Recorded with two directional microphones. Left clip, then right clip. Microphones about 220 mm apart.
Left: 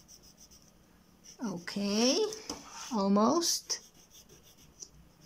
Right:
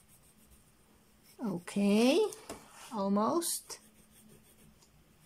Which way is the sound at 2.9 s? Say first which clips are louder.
Left 3 dB; 5° left (ahead or behind).